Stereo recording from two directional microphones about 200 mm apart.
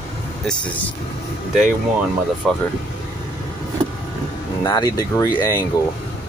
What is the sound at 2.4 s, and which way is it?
Speech, centre (ahead or behind).